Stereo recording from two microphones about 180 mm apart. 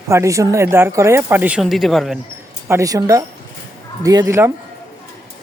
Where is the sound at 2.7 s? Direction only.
15° right (ahead or behind).